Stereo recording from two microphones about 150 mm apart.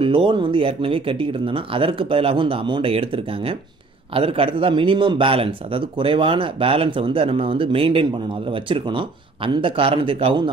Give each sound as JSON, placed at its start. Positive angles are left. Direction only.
{"t": 0.0, "sound": "a man's voice", "side_deg": -35}